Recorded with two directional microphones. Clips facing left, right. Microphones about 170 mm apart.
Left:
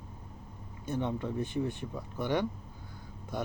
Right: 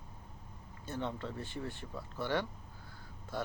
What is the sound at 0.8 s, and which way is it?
Speech, 15° left (ahead or behind).